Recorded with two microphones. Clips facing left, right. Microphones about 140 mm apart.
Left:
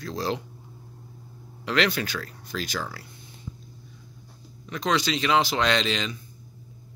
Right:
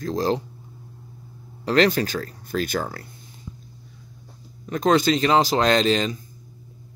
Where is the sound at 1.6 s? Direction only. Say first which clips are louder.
Right 6 dB; 40° right (ahead or behind).